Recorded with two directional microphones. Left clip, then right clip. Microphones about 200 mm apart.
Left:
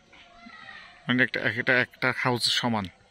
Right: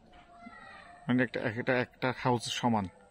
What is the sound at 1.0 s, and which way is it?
Speech, centre (ahead or behind).